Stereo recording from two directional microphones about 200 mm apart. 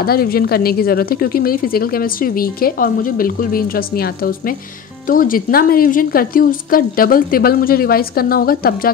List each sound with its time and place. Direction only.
0.0 s a woman's voice: 50° left (ahead or behind)